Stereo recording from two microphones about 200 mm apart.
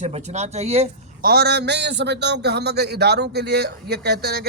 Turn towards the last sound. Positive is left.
turn(degrees=-55)  # may be behind; listen again after turning